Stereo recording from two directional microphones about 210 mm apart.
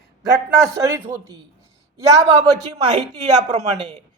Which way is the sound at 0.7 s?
15° right (ahead or behind).